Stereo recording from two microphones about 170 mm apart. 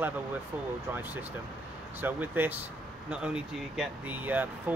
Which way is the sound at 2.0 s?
10° right (ahead or behind).